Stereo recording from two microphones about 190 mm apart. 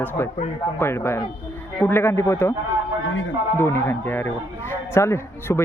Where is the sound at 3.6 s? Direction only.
15° left (ahead or behind).